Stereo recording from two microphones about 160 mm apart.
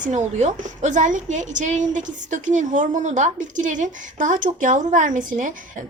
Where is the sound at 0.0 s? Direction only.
50° right (ahead or behind).